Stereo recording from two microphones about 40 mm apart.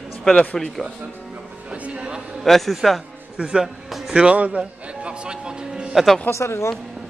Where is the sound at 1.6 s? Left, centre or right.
Right.